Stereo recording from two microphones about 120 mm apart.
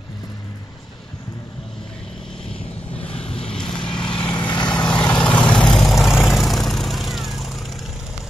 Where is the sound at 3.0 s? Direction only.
55° left (ahead or behind).